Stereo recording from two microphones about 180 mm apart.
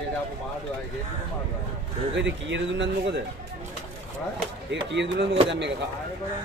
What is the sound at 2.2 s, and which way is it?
Speech, 85° right.